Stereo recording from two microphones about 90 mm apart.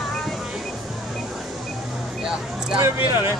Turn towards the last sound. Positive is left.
turn(degrees=-30)  # may be behind; listen again after turning